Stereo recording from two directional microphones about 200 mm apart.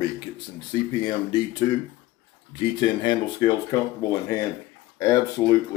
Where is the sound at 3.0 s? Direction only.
20° left (ahead or behind).